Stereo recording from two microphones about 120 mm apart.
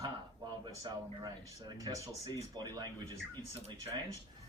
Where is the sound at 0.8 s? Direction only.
30° right (ahead or behind).